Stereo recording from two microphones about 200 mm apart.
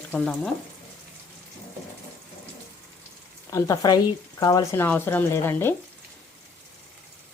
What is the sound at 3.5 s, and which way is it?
Frying, 15° left (ahead or behind).